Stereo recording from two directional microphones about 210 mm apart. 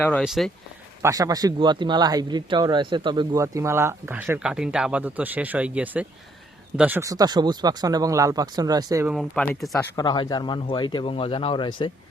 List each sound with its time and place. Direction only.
0.0 s speech: 5° left (ahead or behind)
1.0 s speech: 15° right (ahead or behind)
9.0 s speech: centre (ahead or behind); by 11.9 s 25° left (ahead or behind)